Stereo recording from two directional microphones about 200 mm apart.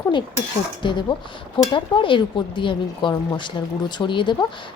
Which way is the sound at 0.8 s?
25° left (ahead or behind).